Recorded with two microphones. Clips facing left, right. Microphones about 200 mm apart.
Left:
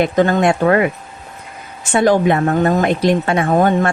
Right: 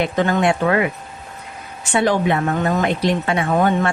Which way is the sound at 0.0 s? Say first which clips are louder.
Left 4 dB; 40° left (ahead or behind).